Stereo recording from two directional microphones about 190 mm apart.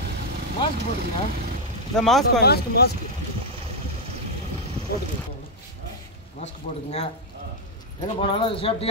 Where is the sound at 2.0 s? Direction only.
Centre (ahead or behind).